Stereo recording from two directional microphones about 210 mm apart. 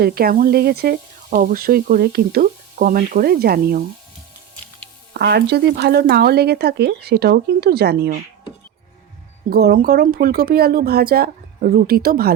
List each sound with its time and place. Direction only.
0.0 s speech: 45° right (ahead or behind)
5.1 s speech: 50° right (ahead or behind)
9.5 s speech: 50° right (ahead or behind)